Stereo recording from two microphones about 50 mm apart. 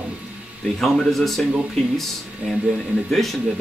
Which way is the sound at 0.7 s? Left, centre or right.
Centre.